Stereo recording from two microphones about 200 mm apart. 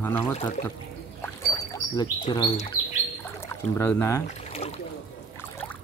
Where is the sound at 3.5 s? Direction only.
10° left (ahead or behind).